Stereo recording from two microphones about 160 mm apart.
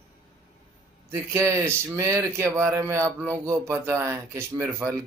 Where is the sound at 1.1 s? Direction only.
15° right (ahead or behind).